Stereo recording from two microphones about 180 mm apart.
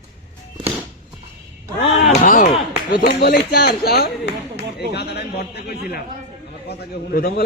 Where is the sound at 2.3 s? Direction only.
45° left (ahead or behind).